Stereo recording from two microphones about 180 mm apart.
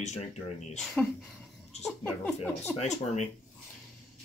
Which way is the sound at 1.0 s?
5° left (ahead or behind).